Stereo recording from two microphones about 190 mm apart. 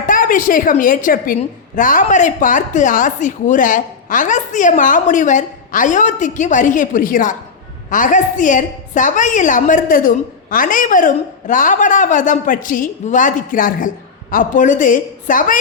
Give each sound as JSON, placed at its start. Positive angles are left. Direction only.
{"t": 0.1, "sound": "a woman's voice", "side_deg": 45}